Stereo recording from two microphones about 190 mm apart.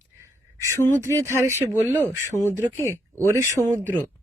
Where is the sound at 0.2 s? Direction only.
15° right (ahead or behind).